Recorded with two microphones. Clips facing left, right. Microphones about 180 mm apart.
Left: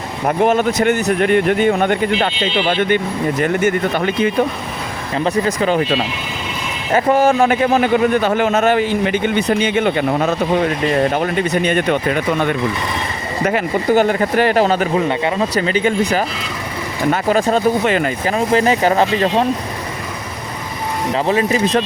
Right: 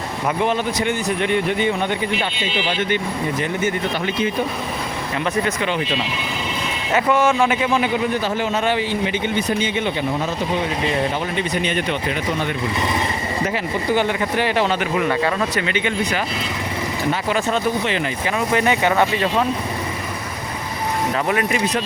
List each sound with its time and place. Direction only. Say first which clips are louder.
0.3 s speech: left 6 dB; 45° left (ahead or behind)
5.1 s speech: left 5 dB; 35° left (ahead or behind)
6.9 s a man's voice: left 4 dB; 35° left (ahead or behind); by 8.6 s 65° left (ahead or behind)
8.6 s speech: left 5 dB; 50° left (ahead or behind)
13.9 s speech: left 6 dB; 45° left (ahead or behind)
15.0 s speech: left 2 dB; 25° left (ahead or behind)
15.5 s speech: left 6 dB; 35° left (ahead or behind)
18.3 s speech: left 4 dB; 30° left (ahead or behind)
21.1 s speech: left 6 dB; 30° left (ahead or behind)